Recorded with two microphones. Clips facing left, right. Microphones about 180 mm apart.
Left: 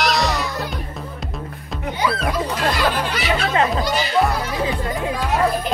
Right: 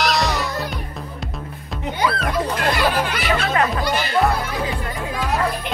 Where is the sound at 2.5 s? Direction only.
60° right (ahead or behind).